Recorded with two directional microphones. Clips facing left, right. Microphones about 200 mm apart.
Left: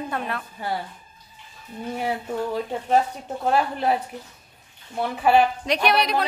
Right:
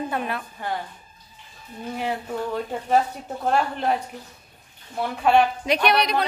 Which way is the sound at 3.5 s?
5° left (ahead or behind).